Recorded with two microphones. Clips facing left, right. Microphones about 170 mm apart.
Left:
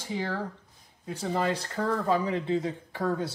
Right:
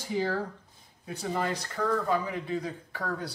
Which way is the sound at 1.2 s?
30° left (ahead or behind).